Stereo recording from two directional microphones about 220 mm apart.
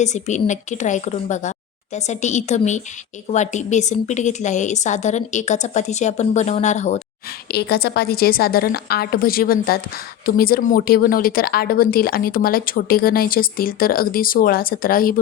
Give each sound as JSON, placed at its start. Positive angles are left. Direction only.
{"t": 0.0, "sound": "a woman's voice", "side_deg": 30}
{"t": 7.4, "sound": "a woman's voice", "side_deg": 45}